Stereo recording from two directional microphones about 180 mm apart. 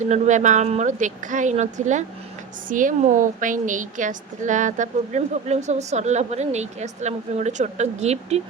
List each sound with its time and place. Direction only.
0.0 s a woman's voice: 40° right (ahead or behind)